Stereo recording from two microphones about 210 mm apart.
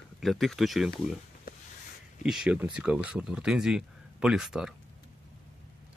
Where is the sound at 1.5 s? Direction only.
45° left (ahead or behind).